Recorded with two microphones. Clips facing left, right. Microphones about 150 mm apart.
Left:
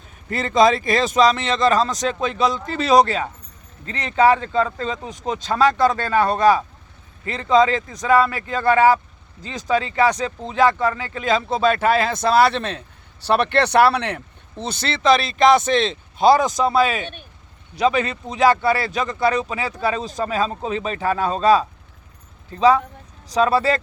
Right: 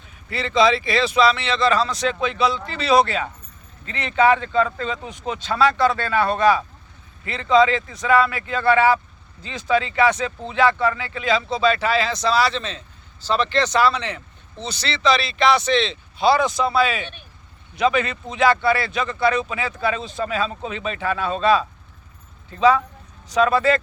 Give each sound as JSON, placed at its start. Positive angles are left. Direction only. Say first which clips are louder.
{"t": 0.3, "sound": "speech", "louder": "left 2 dB", "side_deg": 45}
{"t": 14.6, "sound": "speech", "louder": "left 1 dB", "side_deg": 50}